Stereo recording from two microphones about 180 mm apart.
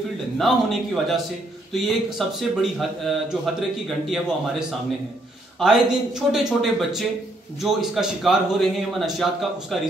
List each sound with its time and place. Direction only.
0.4 s speech: centre (ahead or behind)